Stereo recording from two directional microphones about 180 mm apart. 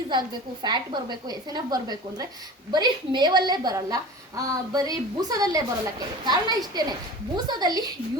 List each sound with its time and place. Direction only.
0.1 s a woman's voice: 25° right (ahead or behind)